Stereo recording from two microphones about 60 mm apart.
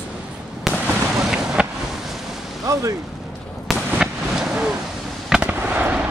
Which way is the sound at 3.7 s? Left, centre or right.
Centre.